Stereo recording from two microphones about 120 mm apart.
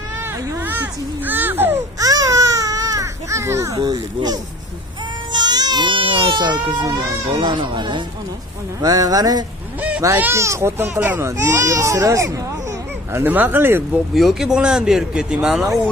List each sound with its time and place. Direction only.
0.6 s a sound: 15° right (ahead or behind)
2.0 s baby cry: 30° right (ahead or behind)
8.8 s a sound: 30° right (ahead or behind)
9.8 s honk: 10° right (ahead or behind)
10.0 s speech: 20° right (ahead or behind)
13.1 s speech: 15° right (ahead or behind)
14.1 s speech: centre (ahead or behind)